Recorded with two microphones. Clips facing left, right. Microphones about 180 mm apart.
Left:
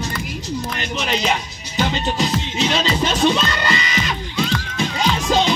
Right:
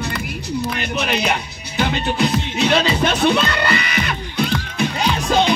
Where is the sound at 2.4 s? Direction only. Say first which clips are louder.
Right 3 dB; 60° right (ahead or behind).